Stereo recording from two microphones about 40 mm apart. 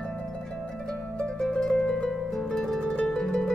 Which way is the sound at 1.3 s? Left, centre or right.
Centre.